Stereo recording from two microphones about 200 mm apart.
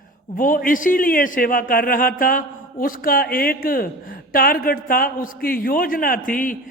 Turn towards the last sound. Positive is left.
turn(degrees=45)  # may be behind; listen again after turning